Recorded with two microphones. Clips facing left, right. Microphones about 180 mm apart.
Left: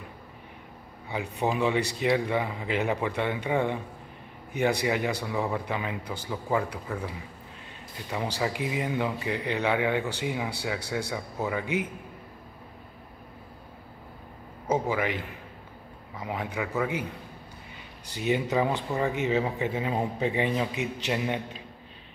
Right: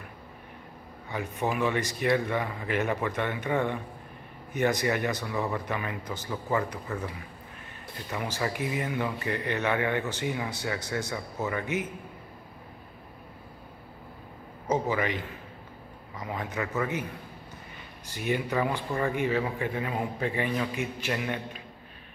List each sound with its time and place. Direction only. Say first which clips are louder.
1.1 s speech: left 2 dB; 15° left (ahead or behind)
8.1 s speech: left 2 dB; 15° left (ahead or behind)
14.7 s speech: left 1 dB; 10° left (ahead or behind)
16.2 s speech: left 1 dB; 15° left (ahead or behind)
18.1 s speech: left 3 dB; 15° left (ahead or behind)